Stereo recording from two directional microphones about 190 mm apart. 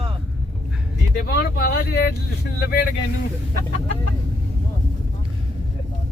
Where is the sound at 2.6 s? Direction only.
50° left (ahead or behind).